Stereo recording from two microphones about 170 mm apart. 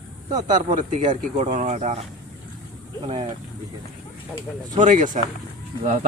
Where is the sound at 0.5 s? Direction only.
45° right (ahead or behind).